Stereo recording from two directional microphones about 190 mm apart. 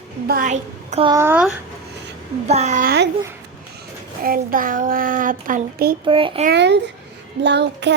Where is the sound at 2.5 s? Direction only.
35° right (ahead or behind).